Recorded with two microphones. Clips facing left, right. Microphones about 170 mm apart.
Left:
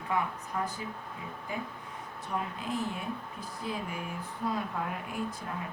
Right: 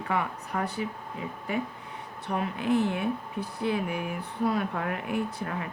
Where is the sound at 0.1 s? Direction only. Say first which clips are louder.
Right 2 dB; 70° right (ahead or behind).